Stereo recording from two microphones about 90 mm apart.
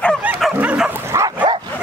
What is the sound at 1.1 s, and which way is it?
Dog, 35° right (ahead or behind).